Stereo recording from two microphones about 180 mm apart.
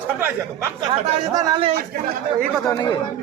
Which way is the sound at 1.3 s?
25° right (ahead or behind).